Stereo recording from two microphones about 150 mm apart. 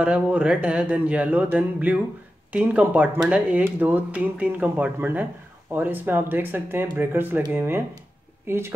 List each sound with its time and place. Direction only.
0.0 s speech: 10° right (ahead or behind)